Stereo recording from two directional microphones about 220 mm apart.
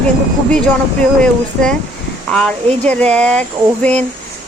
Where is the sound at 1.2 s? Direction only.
5° left (ahead or behind).